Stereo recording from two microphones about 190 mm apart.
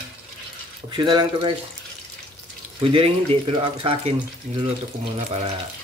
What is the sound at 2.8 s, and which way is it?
Speech, 30° right (ahead or behind).